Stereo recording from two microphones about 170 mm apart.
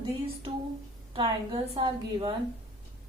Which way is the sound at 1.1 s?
30° right (ahead or behind).